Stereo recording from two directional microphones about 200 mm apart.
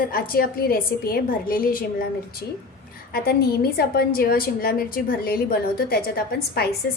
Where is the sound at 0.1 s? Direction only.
45° left (ahead or behind).